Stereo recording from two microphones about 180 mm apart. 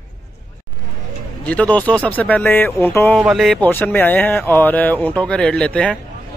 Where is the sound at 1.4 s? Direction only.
10° left (ahead or behind).